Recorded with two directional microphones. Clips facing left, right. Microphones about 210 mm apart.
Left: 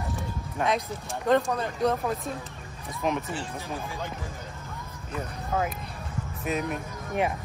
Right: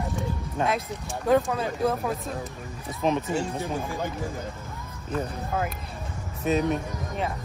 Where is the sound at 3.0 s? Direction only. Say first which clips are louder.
Right 3 dB; 20° right (ahead or behind).